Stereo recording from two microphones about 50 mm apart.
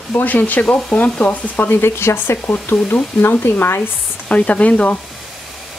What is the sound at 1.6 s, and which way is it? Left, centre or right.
Speech, left.